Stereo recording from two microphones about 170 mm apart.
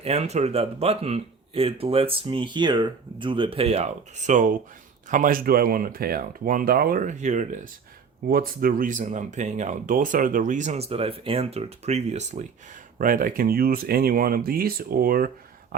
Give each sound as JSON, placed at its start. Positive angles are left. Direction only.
{"t": 0.0, "sound": "speech", "side_deg": -40}
{"t": 8.3, "sound": "speech", "side_deg": -60}
{"t": 13.0, "sound": "speech", "side_deg": -55}